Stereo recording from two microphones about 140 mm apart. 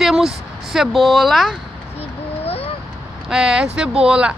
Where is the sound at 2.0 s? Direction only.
45° left (ahead or behind).